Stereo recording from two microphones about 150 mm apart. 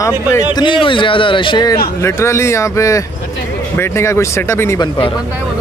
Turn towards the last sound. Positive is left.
turn(degrees=20)  # may be behind; listen again after turning